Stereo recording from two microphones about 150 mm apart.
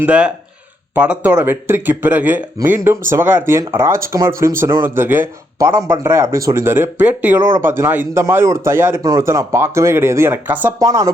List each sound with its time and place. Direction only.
0.0 s speech: 10° right (ahead or behind)